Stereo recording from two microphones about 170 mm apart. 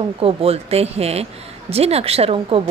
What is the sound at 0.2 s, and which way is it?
A woman's voice, 35° right (ahead or behind).